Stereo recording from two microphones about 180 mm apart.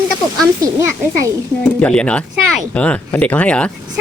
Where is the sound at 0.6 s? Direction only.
15° right (ahead or behind).